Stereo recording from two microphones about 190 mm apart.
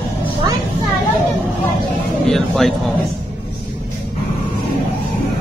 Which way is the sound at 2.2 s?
Centre (ahead or behind).